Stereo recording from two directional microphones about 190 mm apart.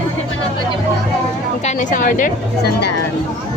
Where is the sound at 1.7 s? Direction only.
40° left (ahead or behind).